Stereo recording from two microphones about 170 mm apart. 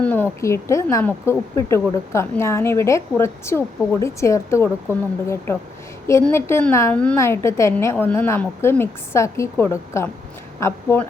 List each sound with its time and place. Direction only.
0.0 s a woman's voice: 10° left (ahead or behind)